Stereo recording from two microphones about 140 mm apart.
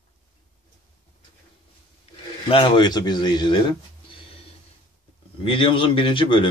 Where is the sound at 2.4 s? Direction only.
35° left (ahead or behind).